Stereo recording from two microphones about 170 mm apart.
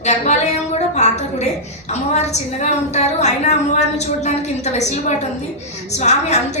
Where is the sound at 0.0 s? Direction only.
40° left (ahead or behind).